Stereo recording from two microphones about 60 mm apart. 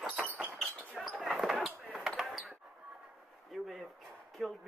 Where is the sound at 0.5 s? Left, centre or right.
Centre.